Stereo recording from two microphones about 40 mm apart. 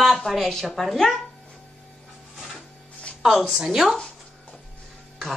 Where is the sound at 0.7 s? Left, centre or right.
Centre.